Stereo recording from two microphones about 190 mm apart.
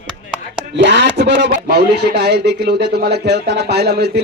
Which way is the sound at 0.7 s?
65° right (ahead or behind).